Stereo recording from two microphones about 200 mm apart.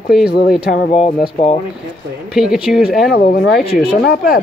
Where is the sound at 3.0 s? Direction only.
50° left (ahead or behind).